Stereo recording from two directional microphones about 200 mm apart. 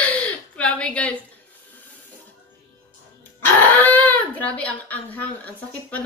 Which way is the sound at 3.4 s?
10° left (ahead or behind).